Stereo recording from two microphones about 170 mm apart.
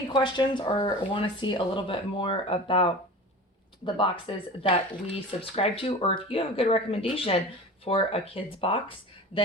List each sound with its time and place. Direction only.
0.1 s speech: 25° left (ahead or behind)